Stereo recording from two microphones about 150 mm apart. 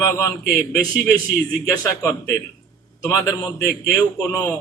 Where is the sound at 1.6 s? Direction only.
20° left (ahead or behind).